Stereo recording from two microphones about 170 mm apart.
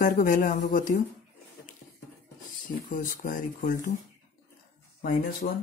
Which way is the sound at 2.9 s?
50° left (ahead or behind).